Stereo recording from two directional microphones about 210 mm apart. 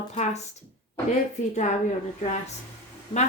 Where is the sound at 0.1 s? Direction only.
30° left (ahead or behind).